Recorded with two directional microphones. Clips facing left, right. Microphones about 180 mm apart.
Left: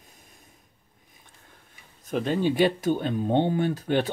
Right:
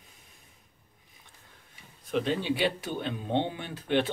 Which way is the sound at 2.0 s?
45° left (ahead or behind).